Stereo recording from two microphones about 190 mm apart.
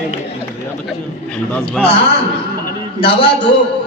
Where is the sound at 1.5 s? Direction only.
10° left (ahead or behind).